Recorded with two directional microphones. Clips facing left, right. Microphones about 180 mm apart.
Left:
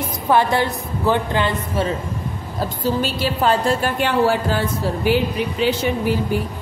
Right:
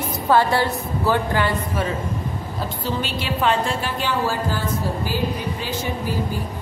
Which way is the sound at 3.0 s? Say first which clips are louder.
Left 4 dB; 40° left (ahead or behind).